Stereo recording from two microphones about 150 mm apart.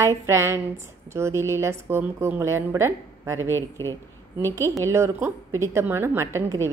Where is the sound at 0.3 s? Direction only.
20° right (ahead or behind).